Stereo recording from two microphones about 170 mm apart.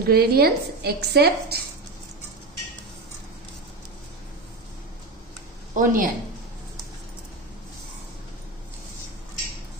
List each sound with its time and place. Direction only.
0.0 s a woman's voice: 65° right (ahead or behind)
5.8 s speech: 55° right (ahead or behind)